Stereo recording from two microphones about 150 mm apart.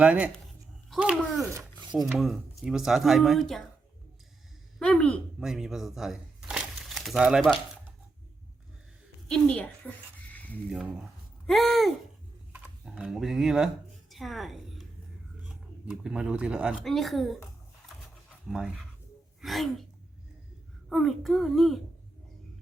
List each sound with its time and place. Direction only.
0.0 s speech: 10° right (ahead or behind)
1.8 s chopping: 30° right (ahead or behind)
2.1 s speech: centre (ahead or behind)
4.8 s a woman's voice: 5° left (ahead or behind)
5.4 s speech: 5° right (ahead or behind)
9.3 s speech: 5° left (ahead or behind)
10.3 s a sound: 10° left (ahead or behind)
10.7 s a woman's voice: 5° right (ahead or behind)
18.4 s speech: 5° right (ahead or behind)
20.9 s speech: centre (ahead or behind)